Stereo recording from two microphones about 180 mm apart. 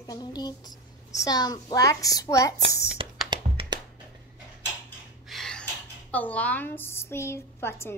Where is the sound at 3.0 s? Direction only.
30° right (ahead or behind).